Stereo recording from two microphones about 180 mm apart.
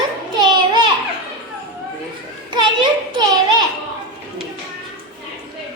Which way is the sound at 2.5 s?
25° right (ahead or behind).